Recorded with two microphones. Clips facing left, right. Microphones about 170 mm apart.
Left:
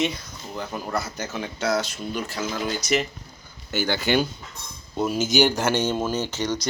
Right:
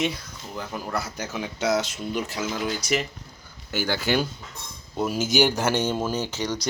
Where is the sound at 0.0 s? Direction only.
5° right (ahead or behind).